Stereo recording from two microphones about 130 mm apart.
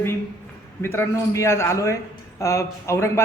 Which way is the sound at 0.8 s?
20° left (ahead or behind).